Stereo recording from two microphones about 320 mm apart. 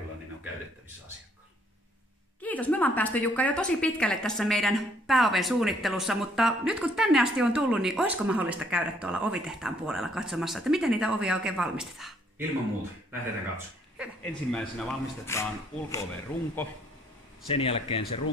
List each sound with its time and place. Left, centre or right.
2.4 s a woman's voice: centre
13.9 s a woman's voice: centre
17.5 s speech: centre